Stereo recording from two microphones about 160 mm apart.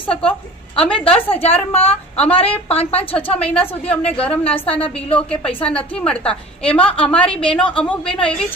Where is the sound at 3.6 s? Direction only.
10° left (ahead or behind).